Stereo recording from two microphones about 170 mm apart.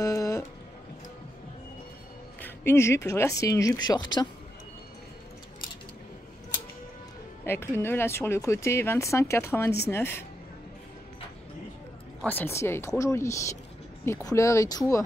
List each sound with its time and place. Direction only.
0.0 s music: 20° left (ahead or behind)
2.4 s speech: 15° left (ahead or behind)
7.4 s speech: 15° left (ahead or behind)
12.2 s speech: 10° left (ahead or behind)